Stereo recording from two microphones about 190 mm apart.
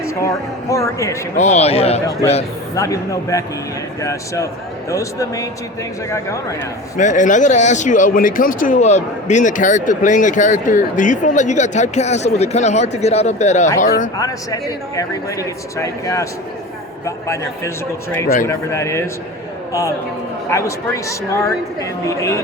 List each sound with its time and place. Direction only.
0.0 s a woman's voice: 15° left (ahead or behind)
1.4 s speech: 35° left (ahead or behind)
2.7 s a man's voice: 15° left (ahead or behind)
6.9 s speech: 40° left (ahead or behind)
14.2 s a man's voice: 20° left (ahead or behind)
17.2 s a man's voice: 15° left (ahead or behind)
20.5 s a man's voice: 15° left (ahead or behind)